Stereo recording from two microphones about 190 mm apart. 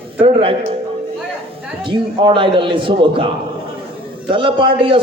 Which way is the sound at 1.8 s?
25° right (ahead or behind).